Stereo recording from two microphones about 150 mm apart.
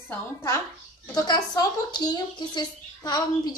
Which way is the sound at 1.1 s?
25° left (ahead or behind).